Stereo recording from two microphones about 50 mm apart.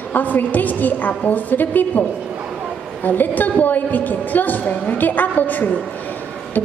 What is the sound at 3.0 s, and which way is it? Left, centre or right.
A woman's voice, left.